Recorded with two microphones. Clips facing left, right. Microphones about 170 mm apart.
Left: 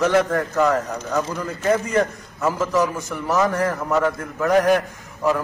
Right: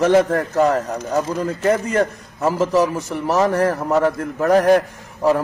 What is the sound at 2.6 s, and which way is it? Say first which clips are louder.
A man's voice: right 5 dB; 25° right (ahead or behind).